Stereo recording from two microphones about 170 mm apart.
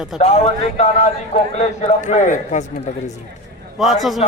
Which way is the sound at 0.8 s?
45° left (ahead or behind).